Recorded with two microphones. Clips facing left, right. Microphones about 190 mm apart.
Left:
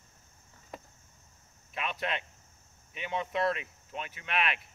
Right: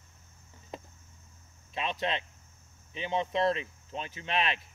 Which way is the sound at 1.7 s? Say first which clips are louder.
Right 2 dB; 25° right (ahead or behind).